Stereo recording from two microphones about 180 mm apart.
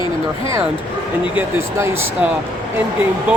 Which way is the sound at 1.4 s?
15° right (ahead or behind).